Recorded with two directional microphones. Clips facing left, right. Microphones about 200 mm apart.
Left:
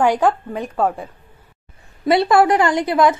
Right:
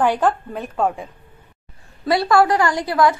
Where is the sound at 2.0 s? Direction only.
20° left (ahead or behind).